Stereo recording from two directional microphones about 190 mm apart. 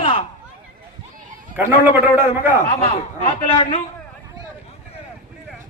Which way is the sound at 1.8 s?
10° right (ahead or behind).